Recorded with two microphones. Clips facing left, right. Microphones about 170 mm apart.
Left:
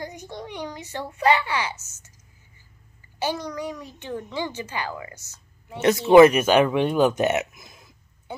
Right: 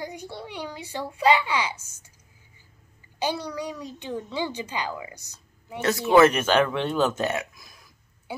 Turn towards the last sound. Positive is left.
turn(degrees=25)  # may be behind; listen again after turning